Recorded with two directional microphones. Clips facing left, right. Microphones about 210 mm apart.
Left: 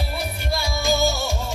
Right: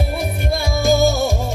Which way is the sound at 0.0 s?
50° right (ahead or behind).